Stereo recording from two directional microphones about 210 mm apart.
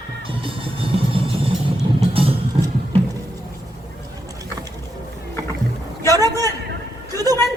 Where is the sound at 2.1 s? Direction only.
25° right (ahead or behind).